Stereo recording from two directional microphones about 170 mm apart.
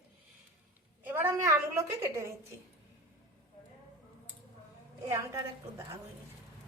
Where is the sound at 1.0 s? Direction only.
10° right (ahead or behind).